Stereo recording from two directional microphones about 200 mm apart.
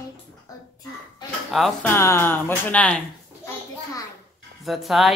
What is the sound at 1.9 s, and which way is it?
Speech, 15° left (ahead or behind).